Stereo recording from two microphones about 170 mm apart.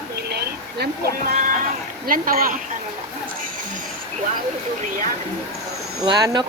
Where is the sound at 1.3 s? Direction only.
50° right (ahead or behind).